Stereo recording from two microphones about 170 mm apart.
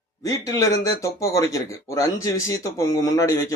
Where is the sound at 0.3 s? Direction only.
20° left (ahead or behind).